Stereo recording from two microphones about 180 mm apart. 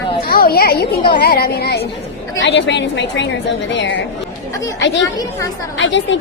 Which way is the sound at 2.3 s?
80° left.